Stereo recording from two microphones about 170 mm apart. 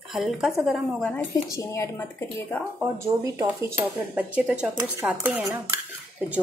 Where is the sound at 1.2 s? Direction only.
20° left (ahead or behind).